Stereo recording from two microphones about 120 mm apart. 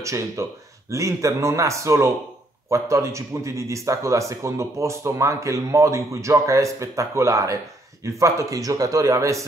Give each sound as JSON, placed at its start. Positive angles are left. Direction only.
{"t": 0.0, "sound": "a man's voice", "side_deg": -25}